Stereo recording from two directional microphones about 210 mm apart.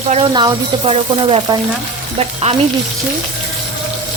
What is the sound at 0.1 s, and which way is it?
Speech, 25° right (ahead or behind).